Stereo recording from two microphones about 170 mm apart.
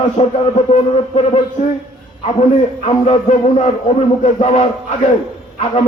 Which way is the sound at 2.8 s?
40° left (ahead or behind).